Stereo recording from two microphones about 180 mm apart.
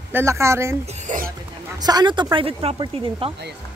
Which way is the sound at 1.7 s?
20° right (ahead or behind).